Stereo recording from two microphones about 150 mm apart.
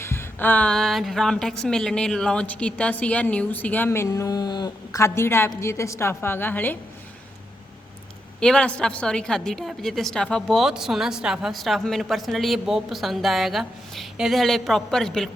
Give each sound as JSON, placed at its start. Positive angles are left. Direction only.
{"t": 0.0, "sound": "a woman's voice", "side_deg": 15}
{"t": 8.4, "sound": "a woman's voice", "side_deg": 5}